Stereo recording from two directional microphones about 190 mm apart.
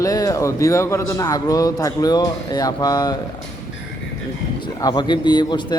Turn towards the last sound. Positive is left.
turn(degrees=20)  # may be behind; listen again after turning